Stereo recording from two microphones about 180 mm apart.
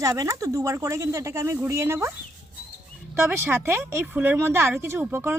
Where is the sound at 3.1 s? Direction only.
15° right (ahead or behind).